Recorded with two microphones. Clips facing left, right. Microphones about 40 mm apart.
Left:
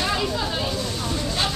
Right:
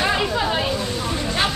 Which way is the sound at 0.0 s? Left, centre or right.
Right.